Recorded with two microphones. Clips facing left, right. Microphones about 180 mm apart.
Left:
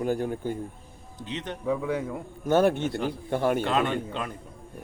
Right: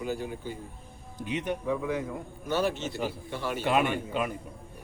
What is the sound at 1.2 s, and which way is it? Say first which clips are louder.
Speech: right 3 dB; 10° right (ahead or behind).